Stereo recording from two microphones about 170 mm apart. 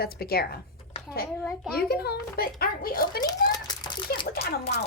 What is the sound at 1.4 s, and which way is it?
Speech, centre (ahead or behind).